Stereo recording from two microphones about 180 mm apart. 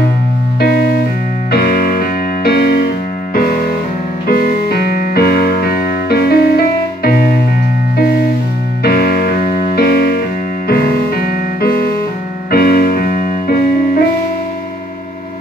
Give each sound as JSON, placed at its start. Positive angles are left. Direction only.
{"t": 1.5, "sound": "music", "side_deg": 60}
{"t": 4.3, "sound": "music", "side_deg": 60}
{"t": 8.8, "sound": "music", "side_deg": 60}